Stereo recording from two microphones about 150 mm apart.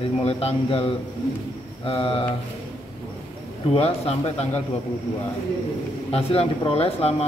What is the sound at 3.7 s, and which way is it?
Speech, 40° left (ahead or behind).